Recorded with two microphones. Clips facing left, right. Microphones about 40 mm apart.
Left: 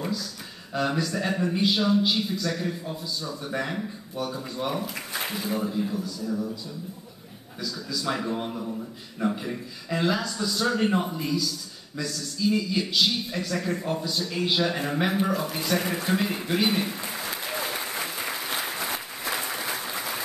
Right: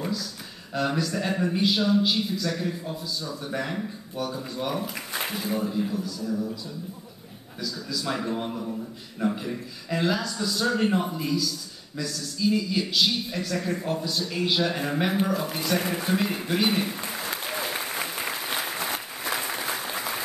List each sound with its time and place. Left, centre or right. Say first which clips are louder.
0.7 s speech: even; centre
7.6 s a man's voice: left 1 dB; centre
17.5 s applause: left 1 dB; centre
17.7 s applause: right 1 dB; centre